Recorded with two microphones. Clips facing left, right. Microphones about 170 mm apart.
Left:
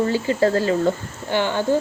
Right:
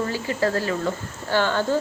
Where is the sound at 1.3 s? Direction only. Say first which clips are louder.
Even; 15° left (ahead or behind).